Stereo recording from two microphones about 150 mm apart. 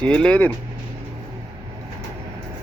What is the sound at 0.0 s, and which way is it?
Speech, 5° left (ahead or behind).